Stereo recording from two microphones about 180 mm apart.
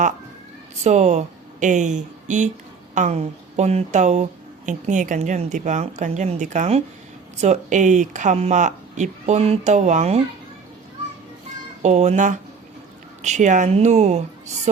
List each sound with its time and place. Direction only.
0.9 s speech: 40° right (ahead or behind)
11.8 s speech: 40° right (ahead or behind)